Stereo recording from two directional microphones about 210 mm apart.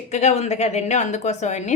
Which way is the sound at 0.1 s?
30° left (ahead or behind).